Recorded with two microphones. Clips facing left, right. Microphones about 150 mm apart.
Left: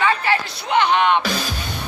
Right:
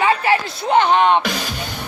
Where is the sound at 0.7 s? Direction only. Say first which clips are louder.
Right 3 dB; 40° right (ahead or behind).